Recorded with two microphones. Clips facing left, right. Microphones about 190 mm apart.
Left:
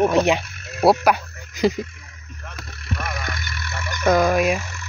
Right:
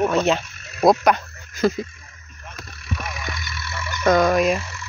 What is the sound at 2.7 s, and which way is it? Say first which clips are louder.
Vehicle: left 2 dB; 70° left (ahead or behind).